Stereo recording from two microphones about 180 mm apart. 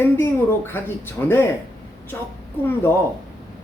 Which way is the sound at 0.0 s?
10° left (ahead or behind).